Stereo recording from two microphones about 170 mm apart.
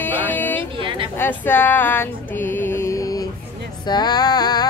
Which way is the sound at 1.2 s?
10° left (ahead or behind).